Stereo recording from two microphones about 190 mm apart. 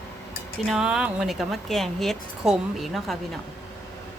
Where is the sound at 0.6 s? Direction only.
Centre (ahead or behind).